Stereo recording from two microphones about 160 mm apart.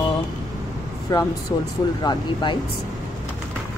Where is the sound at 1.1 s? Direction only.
25° left (ahead or behind).